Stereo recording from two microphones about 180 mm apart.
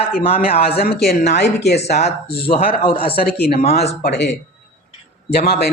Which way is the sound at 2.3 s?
30° left (ahead or behind).